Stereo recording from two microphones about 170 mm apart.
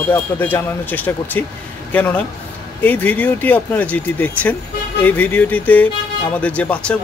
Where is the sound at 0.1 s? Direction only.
10° left (ahead or behind).